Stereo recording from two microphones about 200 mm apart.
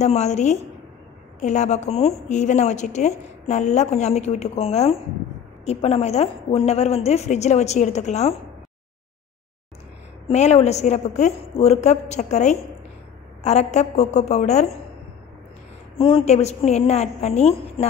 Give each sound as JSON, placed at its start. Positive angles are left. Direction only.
{"t": 0.0, "sound": "a woman's voice", "side_deg": 35}
{"t": 10.2, "sound": "a woman's voice", "side_deg": 35}
{"t": 16.0, "sound": "a woman's voice", "side_deg": 25}